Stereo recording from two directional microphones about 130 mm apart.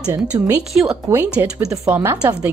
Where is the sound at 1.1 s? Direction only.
15° right (ahead or behind).